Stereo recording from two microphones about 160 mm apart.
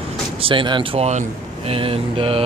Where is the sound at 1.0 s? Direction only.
45° right (ahead or behind).